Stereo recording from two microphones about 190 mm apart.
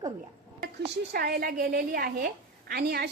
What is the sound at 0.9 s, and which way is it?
A woman's voice, 55° right (ahead or behind).